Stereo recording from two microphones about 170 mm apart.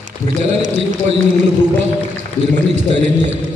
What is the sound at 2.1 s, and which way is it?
A man's voice, 45° right (ahead or behind).